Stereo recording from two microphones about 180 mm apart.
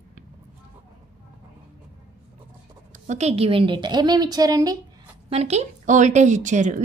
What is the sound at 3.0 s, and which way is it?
A woman's voice, 35° right (ahead or behind).